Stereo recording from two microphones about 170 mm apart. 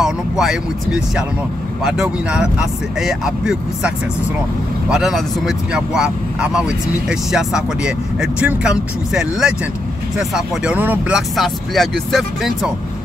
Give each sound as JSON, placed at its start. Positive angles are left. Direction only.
{"t": 0.0, "sound": "speech", "side_deg": 0}